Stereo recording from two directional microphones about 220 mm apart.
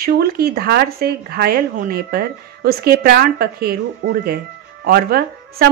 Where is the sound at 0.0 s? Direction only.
45° right (ahead or behind).